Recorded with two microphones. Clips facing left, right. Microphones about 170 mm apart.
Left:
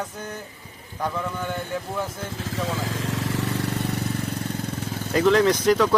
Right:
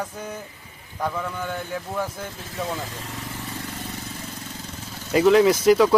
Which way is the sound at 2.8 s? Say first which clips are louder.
Left 6 dB; 90° left.